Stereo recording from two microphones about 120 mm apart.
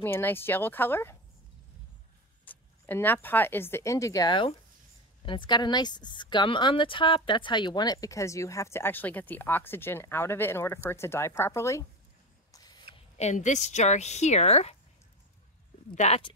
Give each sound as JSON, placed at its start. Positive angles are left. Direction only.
{"t": 0.0, "sound": "speech", "side_deg": 20}
{"t": 2.4, "sound": "speech", "side_deg": 15}
{"t": 4.3, "sound": "speech", "side_deg": 45}
{"t": 13.2, "sound": "a woman's voice", "side_deg": 75}
{"t": 15.9, "sound": "a woman's voice", "side_deg": 75}